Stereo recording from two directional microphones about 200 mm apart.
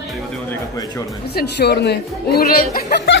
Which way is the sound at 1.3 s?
55° left (ahead or behind).